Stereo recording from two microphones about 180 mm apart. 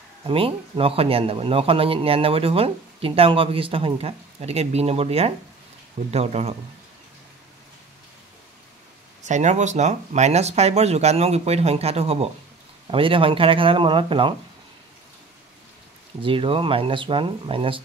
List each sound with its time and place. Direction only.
0.3 s speech: 30° right (ahead or behind)
9.2 s speech: 40° right (ahead or behind)
16.2 s speech: 30° right (ahead or behind)